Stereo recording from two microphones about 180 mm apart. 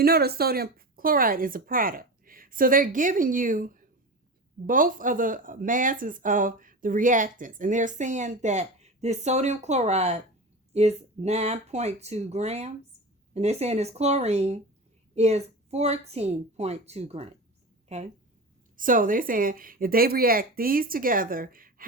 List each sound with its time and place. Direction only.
0.0 s a woman's voice: 60° right (ahead or behind); by 18.1 s 35° right (ahead or behind)
18.8 s speech: 50° right (ahead or behind)